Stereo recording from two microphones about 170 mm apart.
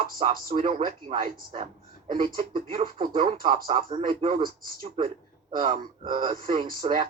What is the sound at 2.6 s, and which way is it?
Speech, 50° right (ahead or behind).